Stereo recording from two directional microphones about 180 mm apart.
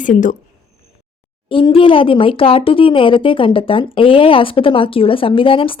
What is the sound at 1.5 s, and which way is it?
Speech, 30° left (ahead or behind).